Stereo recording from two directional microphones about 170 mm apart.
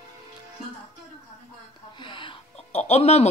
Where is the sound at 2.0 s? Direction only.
30° left (ahead or behind).